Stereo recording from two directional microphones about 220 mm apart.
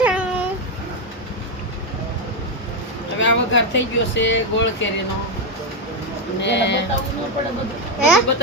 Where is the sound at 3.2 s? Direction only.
55° left (ahead or behind).